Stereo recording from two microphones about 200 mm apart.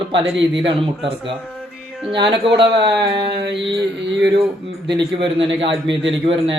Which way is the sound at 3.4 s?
60° right (ahead or behind).